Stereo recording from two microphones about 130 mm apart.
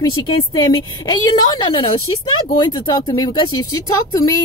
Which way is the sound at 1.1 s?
30° left (ahead or behind).